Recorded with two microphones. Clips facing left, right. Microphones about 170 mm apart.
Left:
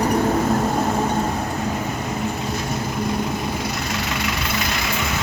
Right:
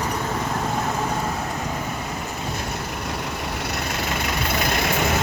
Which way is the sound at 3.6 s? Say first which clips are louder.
Left 1 dB; 50° right (ahead or behind).